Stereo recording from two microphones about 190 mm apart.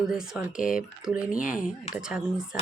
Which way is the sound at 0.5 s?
45° left (ahead or behind).